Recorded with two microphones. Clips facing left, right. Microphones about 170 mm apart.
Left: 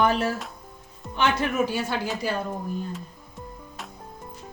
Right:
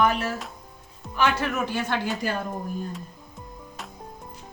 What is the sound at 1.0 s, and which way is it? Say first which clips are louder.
Music: even; 5° right (ahead or behind).